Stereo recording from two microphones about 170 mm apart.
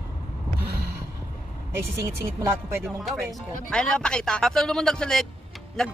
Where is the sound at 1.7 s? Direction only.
15° right (ahead or behind).